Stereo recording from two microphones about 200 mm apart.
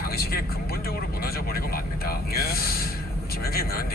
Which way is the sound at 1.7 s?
50° left (ahead or behind).